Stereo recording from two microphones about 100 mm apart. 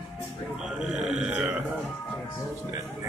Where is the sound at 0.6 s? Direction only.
5° right (ahead or behind).